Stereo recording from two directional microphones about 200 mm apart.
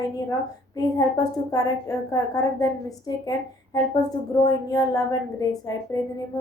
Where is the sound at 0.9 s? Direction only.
15° left (ahead or behind).